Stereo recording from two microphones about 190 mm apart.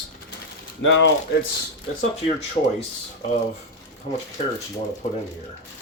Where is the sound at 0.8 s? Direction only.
85° left.